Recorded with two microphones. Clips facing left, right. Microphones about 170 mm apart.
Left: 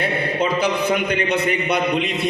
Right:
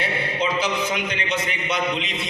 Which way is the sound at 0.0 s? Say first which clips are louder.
Left 4 dB; 55° left (ahead or behind).